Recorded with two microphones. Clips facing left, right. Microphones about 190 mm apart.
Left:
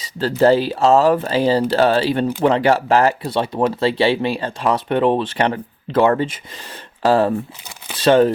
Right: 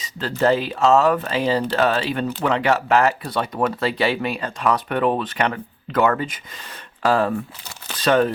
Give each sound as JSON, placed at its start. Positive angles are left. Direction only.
{"t": 0.0, "sound": "speech", "side_deg": 35}